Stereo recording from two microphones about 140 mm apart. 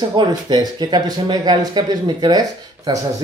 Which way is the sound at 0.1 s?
30° right (ahead or behind).